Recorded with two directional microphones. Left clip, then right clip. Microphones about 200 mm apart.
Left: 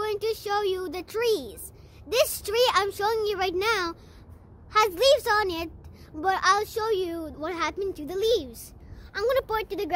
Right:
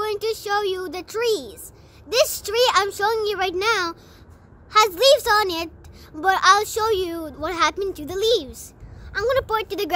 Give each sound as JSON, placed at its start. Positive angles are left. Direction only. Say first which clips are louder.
{"t": 0.0, "sound": "speech", "louder": "right 3 dB", "side_deg": 0}